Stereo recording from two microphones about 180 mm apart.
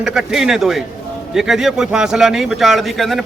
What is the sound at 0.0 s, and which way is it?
A man's voice, centre (ahead or behind).